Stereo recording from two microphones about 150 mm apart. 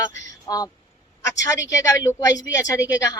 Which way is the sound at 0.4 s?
25° left (ahead or behind).